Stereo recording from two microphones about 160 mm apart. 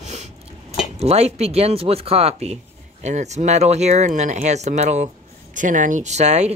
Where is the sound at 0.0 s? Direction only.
45° right (ahead or behind).